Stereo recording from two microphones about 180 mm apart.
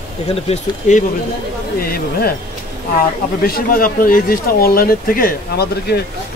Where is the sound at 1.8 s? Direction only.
55° left (ahead or behind).